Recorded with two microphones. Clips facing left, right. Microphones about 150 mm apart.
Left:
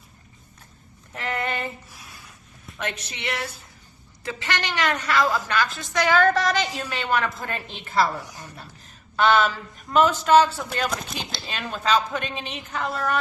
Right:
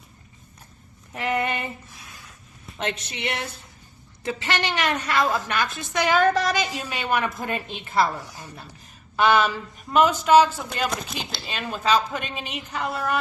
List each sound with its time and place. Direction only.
1.1 s a man's voice: 15° right (ahead or behind)
2.7 s a woman's voice: 25° right (ahead or behind)
9.9 s a man's voice: 10° right (ahead or behind)